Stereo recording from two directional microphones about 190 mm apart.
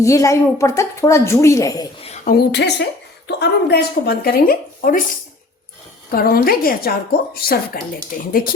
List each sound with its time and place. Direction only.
0.0 s a woman's voice: 15° left (ahead or behind)
2.2 s speech: 60° left (ahead or behind)
6.1 s a woman's voice: 50° left (ahead or behind)